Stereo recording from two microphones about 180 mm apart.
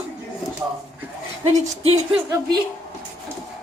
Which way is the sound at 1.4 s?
40° right (ahead or behind).